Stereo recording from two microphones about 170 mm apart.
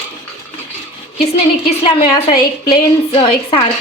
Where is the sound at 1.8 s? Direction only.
30° left (ahead or behind).